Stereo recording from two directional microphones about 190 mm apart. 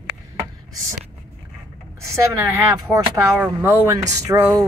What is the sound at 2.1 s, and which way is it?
A woman's voice, 15° right (ahead or behind).